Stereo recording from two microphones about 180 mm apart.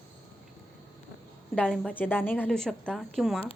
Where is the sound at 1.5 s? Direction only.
5° left (ahead or behind).